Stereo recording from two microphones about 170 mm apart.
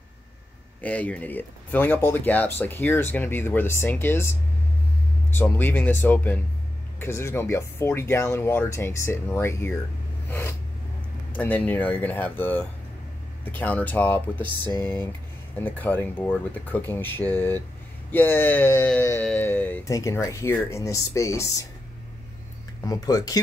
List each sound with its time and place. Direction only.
0.7 s speech: 10° left (ahead or behind)
11.3 s speech: 10° left (ahead or behind)
15.5 s speech: 10° left (ahead or behind)
22.8 s speech: 20° left (ahead or behind)